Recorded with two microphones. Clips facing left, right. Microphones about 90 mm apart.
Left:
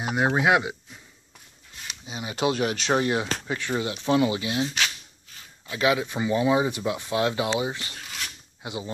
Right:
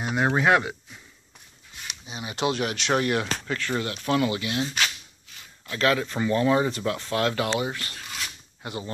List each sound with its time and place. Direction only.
0.1 s speech: 10° left (ahead or behind)
2.0 s speech: 25° left (ahead or behind)
3.0 s speech: 20° left (ahead or behind)
5.7 s speech: 15° left (ahead or behind)